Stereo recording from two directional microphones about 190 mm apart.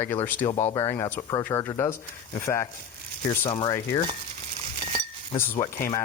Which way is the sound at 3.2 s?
25° left (ahead or behind).